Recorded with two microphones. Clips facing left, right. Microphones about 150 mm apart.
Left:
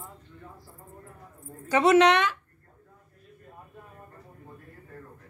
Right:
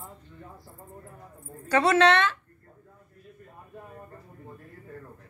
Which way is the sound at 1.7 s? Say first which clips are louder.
Left 1 dB; 15° left (ahead or behind).